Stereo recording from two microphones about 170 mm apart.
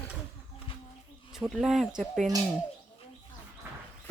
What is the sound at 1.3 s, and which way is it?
Speech, centre (ahead or behind).